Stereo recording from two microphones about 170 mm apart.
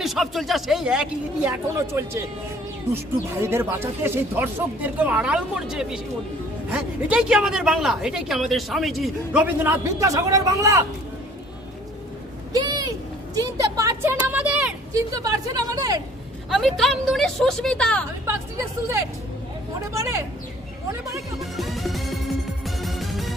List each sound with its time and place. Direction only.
0.0 s a woman's voice: centre (ahead or behind)
1.9 s speech: 15° right (ahead or behind)
3.4 s a woman's voice: 15° right (ahead or behind)
12.5 s bird: 25° right (ahead or behind)
13.3 s a sound: 20° right (ahead or behind)
14.9 s speech: 20° right (ahead or behind)
16.5 s a woman's voice: centre (ahead or behind)
18.3 s speech: 15° right (ahead or behind)
21.3 s music: centre (ahead or behind)